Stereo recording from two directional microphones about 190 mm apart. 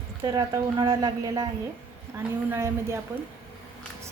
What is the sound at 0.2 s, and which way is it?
A woman's voice, 20° right (ahead or behind).